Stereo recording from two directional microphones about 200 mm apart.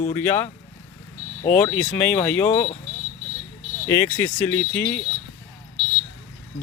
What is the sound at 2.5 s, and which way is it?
Speech, 25° left (ahead or behind).